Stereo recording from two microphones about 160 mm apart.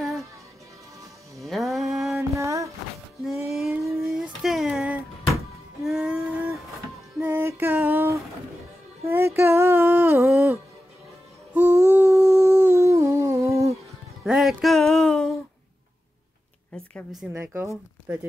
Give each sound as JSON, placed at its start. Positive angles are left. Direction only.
{"t": 1.4, "sound": "music", "side_deg": 0}
{"t": 2.1, "sound": "a sound", "side_deg": -20}
{"t": 3.3, "sound": "music", "side_deg": 0}
{"t": 5.9, "sound": "a sound", "side_deg": -5}
{"t": 7.2, "sound": "female singing", "side_deg": -10}
{"t": 9.1, "sound": "a sound", "side_deg": -15}
{"t": 11.5, "sound": "humming", "side_deg": -15}
{"t": 14.2, "sound": "music", "side_deg": -5}
{"t": 17.2, "sound": "speech", "side_deg": -10}